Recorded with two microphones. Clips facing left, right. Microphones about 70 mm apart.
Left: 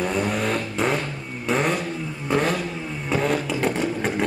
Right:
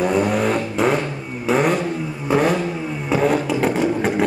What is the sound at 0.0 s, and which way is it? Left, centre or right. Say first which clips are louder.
Vehicle: right 6 dB; centre.